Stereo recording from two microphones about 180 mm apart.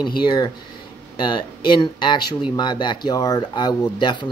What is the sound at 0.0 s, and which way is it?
Speech, 25° left (ahead or behind).